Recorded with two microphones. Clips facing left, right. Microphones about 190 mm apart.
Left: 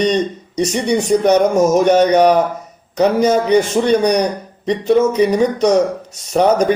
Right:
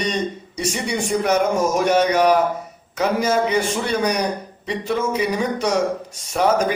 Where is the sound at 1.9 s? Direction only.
35° left (ahead or behind).